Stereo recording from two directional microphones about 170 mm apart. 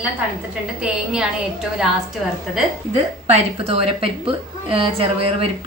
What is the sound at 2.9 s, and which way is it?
A woman's voice, 40° right (ahead or behind).